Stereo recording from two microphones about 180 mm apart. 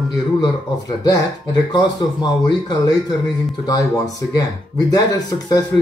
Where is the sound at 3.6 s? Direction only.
20° left (ahead or behind).